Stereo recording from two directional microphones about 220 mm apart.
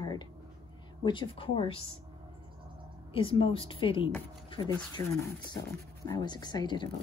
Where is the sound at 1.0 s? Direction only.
20° left (ahead or behind).